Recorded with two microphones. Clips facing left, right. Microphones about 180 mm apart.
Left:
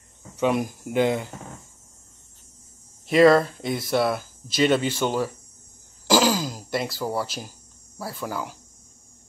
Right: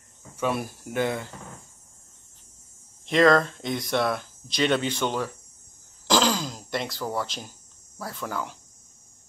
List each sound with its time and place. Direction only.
0.4 s speech: 20° left (ahead or behind)
3.1 s speech: 5° left (ahead or behind)
6.0 s throat clearing: 10° left (ahead or behind)
8.0 s speech: 5° left (ahead or behind)